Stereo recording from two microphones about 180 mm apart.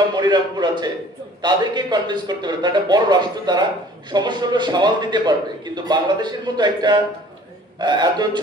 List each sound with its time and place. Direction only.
0.1 s a man's voice: 25° right (ahead or behind)